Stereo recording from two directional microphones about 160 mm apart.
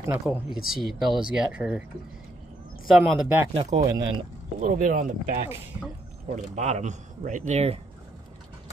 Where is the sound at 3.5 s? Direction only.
45° right (ahead or behind).